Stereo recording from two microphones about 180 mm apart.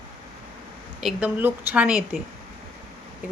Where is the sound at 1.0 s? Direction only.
5° right (ahead or behind).